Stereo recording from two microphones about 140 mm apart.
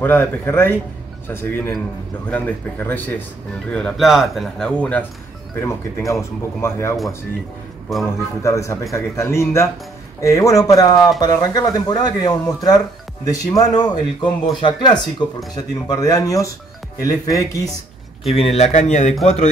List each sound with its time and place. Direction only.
0.0 s speech: 15° left (ahead or behind)
3.7 s speech: centre (ahead or behind); by 7.0 s 20° left (ahead or behind)
8.4 s speech: 20° left (ahead or behind)
18.3 s speech: 45° left (ahead or behind)